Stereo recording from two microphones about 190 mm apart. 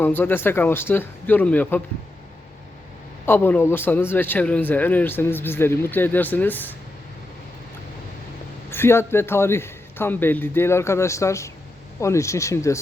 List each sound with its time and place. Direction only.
0.0 s a man's voice: 10° left (ahead or behind)
3.2 s a man's voice: 10° left (ahead or behind)
8.7 s a man's voice: 10° left (ahead or behind)